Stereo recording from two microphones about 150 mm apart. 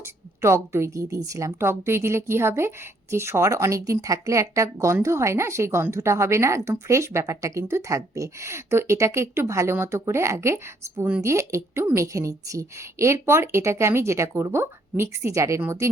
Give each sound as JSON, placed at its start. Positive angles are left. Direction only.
{"t": 0.0, "sound": "a woman's voice", "side_deg": -20}